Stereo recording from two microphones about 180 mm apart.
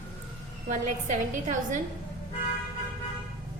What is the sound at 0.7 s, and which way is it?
A woman's voice, 45° right (ahead or behind).